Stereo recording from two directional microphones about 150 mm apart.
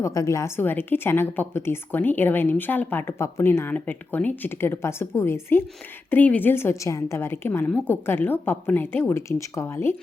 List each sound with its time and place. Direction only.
0.0 s a woman's voice: 20° left (ahead or behind)